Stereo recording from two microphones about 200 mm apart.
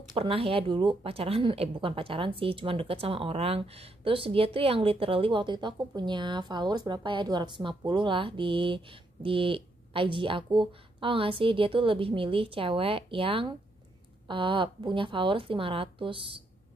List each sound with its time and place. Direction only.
0.1 s a woman's voice: 30° right (ahead or behind)